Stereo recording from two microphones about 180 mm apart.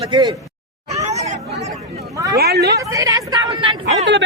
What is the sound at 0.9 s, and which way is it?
Hubbub, 40° right (ahead or behind).